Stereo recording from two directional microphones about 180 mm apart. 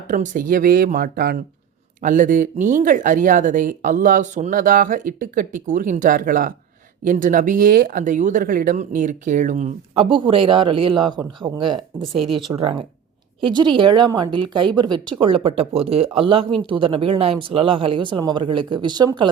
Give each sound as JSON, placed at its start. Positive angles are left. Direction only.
{"t": 0.1, "sound": "speech", "side_deg": -50}
{"t": 2.0, "sound": "speech", "side_deg": -45}
{"t": 12.2, "sound": "speech", "side_deg": 0}
{"t": 12.5, "sound": "speech", "side_deg": -30}